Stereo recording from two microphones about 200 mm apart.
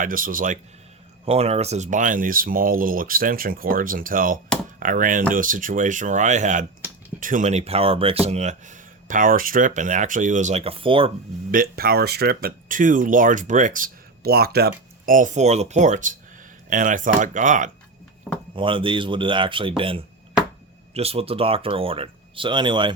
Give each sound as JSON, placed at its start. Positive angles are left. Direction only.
{"t": 0.0, "sound": "speech", "side_deg": -45}
{"t": 1.2, "sound": "speech", "side_deg": -30}
{"t": 11.5, "sound": "speech", "side_deg": -50}
{"t": 18.5, "sound": "speech", "side_deg": -25}